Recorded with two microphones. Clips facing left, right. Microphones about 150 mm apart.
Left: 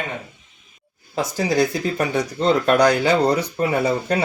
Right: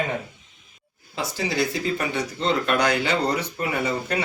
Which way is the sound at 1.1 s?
45° left (ahead or behind).